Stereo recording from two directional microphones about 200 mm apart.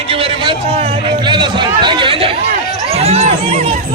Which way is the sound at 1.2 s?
25° right (ahead or behind).